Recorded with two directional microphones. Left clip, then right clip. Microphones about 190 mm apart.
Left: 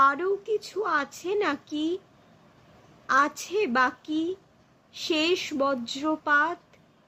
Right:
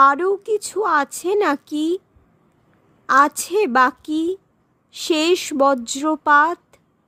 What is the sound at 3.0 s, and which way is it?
A woman's voice, 60° right (ahead or behind).